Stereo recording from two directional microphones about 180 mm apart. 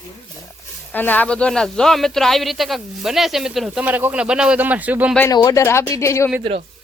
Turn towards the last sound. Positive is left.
turn(degrees=15)  # may be behind; listen again after turning